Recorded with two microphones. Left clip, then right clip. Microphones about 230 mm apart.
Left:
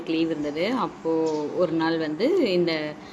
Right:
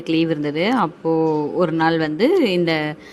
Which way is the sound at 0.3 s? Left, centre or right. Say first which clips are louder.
Right 6 dB; right.